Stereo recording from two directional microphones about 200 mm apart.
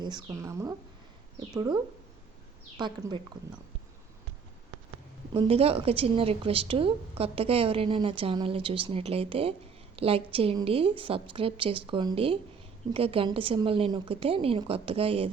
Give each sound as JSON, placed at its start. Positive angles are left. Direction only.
{"t": 0.0, "sound": "a woman's voice", "side_deg": -20}
{"t": 5.3, "sound": "a woman's voice", "side_deg": -30}